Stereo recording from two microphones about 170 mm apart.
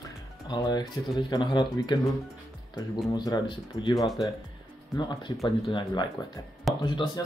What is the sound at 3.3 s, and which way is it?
Speech, 25° left (ahead or behind).